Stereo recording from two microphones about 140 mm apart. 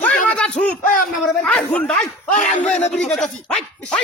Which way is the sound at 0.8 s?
70° left (ahead or behind).